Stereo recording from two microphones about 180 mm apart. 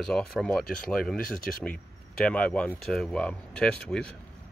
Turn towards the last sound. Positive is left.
turn(degrees=5)  # may be behind; listen again after turning